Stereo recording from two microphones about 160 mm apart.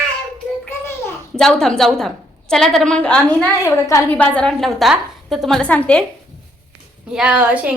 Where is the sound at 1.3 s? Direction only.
5° left (ahead or behind).